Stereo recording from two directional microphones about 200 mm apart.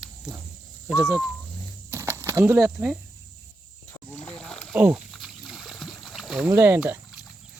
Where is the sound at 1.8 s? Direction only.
15° right (ahead or behind).